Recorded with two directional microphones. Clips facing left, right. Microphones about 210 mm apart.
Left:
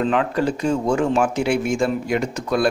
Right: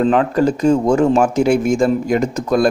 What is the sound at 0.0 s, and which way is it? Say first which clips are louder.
Speech: right 6 dB; 40° right (ahead or behind).